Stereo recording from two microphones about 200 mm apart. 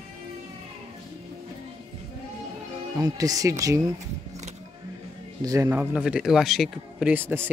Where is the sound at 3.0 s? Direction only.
15° right (ahead or behind).